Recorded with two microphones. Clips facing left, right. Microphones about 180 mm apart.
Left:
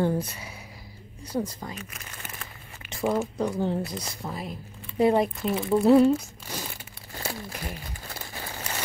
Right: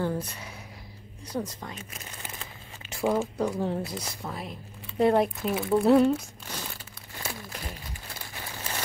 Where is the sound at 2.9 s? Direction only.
5° right (ahead or behind).